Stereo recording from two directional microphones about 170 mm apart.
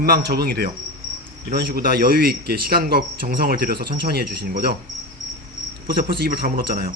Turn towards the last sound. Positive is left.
turn(degrees=-60)  # may be behind; listen again after turning